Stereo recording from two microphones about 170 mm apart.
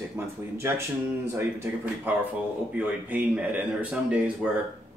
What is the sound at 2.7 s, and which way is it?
Speech, 10° right (ahead or behind).